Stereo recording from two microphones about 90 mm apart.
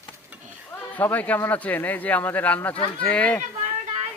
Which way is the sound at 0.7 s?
20° left (ahead or behind).